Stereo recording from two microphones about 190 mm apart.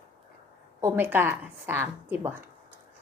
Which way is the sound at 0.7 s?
10° right (ahead or behind).